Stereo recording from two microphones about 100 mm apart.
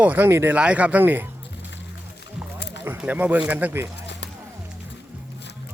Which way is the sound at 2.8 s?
15° right (ahead or behind).